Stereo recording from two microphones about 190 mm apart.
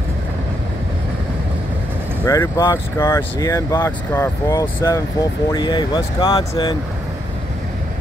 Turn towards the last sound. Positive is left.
turn(degrees=25)  # may be behind; listen again after turning